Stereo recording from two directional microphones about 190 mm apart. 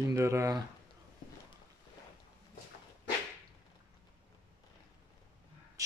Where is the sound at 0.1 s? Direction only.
15° right (ahead or behind).